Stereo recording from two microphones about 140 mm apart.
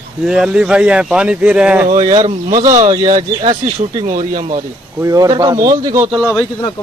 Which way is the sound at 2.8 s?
30° right (ahead or behind).